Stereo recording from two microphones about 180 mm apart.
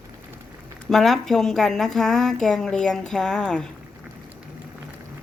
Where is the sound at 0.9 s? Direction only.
Centre (ahead or behind).